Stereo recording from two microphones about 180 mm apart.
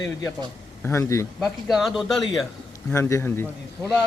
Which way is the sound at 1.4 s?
Centre (ahead or behind).